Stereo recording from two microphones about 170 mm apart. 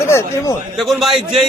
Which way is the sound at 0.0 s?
15° left (ahead or behind).